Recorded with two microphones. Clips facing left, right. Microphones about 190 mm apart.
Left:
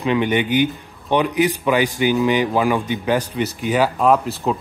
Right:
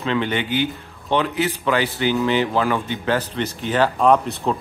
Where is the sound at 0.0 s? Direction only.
15° left (ahead or behind).